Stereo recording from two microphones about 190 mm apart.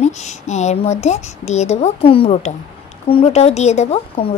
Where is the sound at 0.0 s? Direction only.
35° left (ahead or behind).